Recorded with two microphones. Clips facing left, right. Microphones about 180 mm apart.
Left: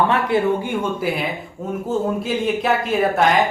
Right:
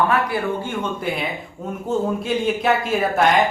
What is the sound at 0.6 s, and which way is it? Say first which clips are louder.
Speech: left 3 dB; 10° left (ahead or behind).